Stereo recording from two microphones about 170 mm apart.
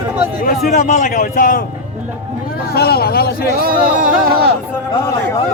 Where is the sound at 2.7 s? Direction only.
70° left (ahead or behind).